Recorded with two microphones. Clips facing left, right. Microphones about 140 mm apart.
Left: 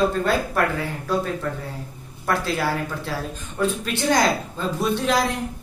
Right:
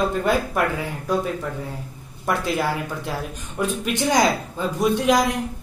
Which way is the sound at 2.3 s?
15° right (ahead or behind).